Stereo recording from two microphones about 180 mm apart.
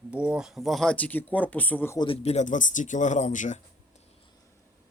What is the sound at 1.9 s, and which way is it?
Speech, 30° left (ahead or behind).